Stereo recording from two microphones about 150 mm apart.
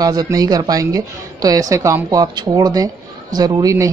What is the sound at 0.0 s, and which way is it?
A man's voice, 25° right (ahead or behind).